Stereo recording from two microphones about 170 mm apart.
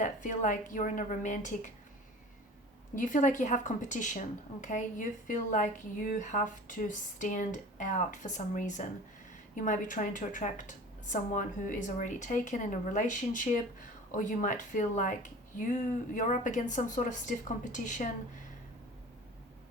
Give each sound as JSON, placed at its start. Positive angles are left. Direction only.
{"t": 0.0, "sound": "a woman's voice", "side_deg": 50}
{"t": 2.9, "sound": "a woman's voice", "side_deg": 50}